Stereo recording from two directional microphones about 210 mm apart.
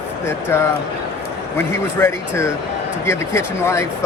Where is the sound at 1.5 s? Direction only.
10° left (ahead or behind).